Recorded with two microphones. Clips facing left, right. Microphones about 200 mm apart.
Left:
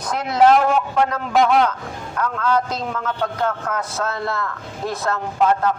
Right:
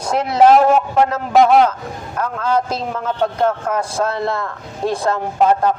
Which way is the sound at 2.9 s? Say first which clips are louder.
Right 7 dB; 30° right (ahead or behind).